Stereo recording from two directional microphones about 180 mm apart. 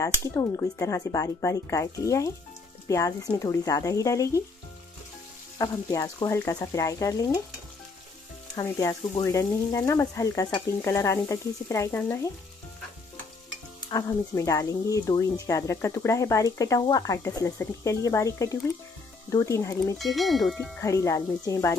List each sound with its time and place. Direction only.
0.2 s speech: 20° left (ahead or behind)
5.6 s speech: 20° left (ahead or behind)
8.5 s speech: 20° left (ahead or behind)
13.8 s speech: 20° left (ahead or behind)
20.0 s speech: centre (ahead or behind)
20.8 s speech: 15° left (ahead or behind)